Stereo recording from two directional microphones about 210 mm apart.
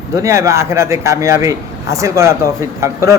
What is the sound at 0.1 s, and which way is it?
A man's voice, 15° right (ahead or behind).